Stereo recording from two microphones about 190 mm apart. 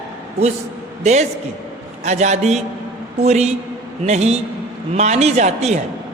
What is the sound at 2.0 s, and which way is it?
A man's voice, 35° right (ahead or behind).